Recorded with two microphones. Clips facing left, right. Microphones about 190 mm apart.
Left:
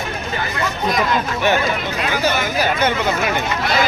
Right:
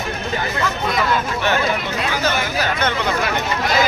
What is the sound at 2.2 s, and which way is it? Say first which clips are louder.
Speech: left 3 dB; 15° left (ahead or behind).